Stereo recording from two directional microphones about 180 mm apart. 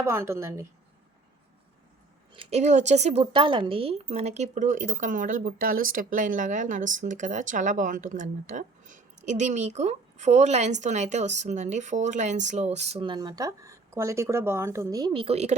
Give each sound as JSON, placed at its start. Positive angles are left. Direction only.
{"t": 0.0, "sound": "a woman's voice", "side_deg": -15}
{"t": 2.3, "sound": "speech", "side_deg": -35}